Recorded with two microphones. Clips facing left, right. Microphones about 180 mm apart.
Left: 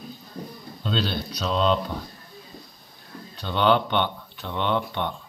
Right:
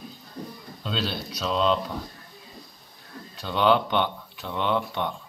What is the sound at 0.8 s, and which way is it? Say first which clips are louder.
Speech: left 3 dB; 5° right (ahead or behind).